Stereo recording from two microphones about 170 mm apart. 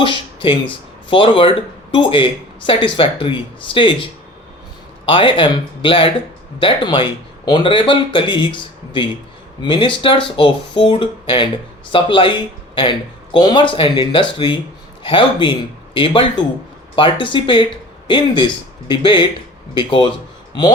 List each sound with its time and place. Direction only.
0.0 s a sound: 30° left (ahead or behind)
1.1 s speech: 30° left (ahead or behind)
5.0 s speech: 30° left (ahead or behind)